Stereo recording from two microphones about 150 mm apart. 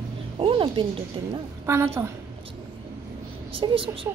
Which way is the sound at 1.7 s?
20° right (ahead or behind).